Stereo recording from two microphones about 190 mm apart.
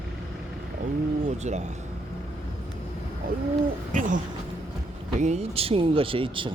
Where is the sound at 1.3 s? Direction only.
35° right (ahead or behind).